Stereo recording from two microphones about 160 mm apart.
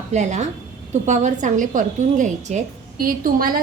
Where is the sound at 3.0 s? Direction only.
60° right (ahead or behind).